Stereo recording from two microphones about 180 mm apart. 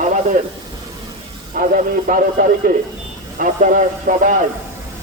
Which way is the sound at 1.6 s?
55° right (ahead or behind).